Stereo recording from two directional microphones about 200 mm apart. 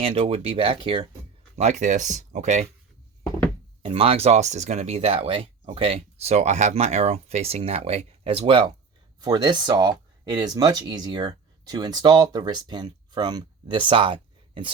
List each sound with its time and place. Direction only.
0.0 s speech: 30° right (ahead or behind)
1.5 s speech: 35° right (ahead or behind)
3.8 s speech: 30° right (ahead or behind)